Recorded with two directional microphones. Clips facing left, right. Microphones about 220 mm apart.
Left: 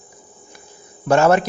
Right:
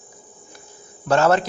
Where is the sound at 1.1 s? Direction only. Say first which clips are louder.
Left 3 dB; 10° left (ahead or behind).